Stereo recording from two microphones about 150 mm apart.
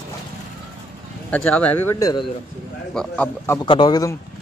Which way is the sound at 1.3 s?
10° left (ahead or behind).